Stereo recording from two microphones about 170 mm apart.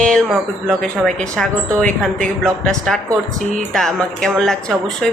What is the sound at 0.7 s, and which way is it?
Speech, 5° left (ahead or behind).